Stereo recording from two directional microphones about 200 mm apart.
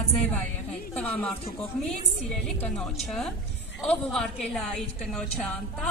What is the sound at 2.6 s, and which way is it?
A woman's voice, 5° left (ahead or behind).